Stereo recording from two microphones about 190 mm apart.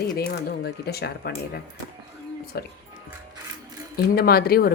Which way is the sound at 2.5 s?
55° left (ahead or behind).